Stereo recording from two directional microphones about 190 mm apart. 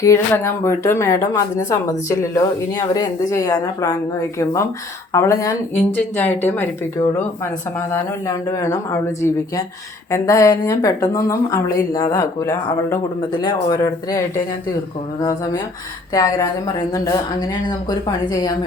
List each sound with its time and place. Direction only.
0.0 s speech: 15° left (ahead or behind)
5.1 s speech: 15° left (ahead or behind)
8.3 s speech: 15° left (ahead or behind)
16.1 s speech: 20° left (ahead or behind)